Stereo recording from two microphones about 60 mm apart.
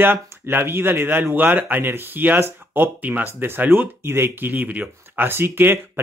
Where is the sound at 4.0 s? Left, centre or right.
Right.